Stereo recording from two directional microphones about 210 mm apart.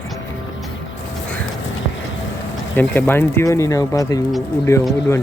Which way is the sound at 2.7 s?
10° left (ahead or behind).